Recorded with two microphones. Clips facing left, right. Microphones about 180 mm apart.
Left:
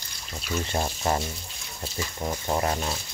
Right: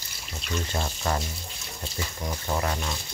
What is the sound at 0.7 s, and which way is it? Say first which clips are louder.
Speech: left 3 dB; 25° left (ahead or behind).